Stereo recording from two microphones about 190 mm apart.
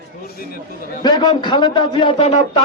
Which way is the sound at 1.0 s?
25° left (ahead or behind).